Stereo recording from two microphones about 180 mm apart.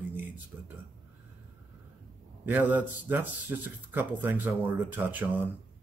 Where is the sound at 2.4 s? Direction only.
10° right (ahead or behind).